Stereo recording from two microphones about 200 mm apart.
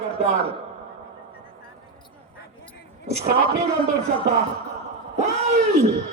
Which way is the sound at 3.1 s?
35° right (ahead or behind).